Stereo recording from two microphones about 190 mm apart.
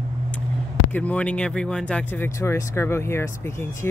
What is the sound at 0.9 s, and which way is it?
Speech, 5° left (ahead or behind).